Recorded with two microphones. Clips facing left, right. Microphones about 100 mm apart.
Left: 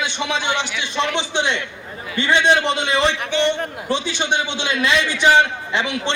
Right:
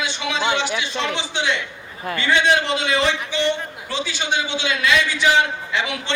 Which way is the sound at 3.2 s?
60° left (ahead or behind).